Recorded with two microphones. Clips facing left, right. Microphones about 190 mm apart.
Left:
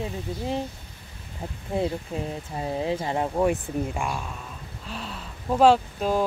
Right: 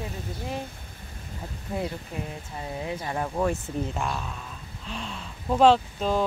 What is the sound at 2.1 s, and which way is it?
Speech, 30° left (ahead or behind).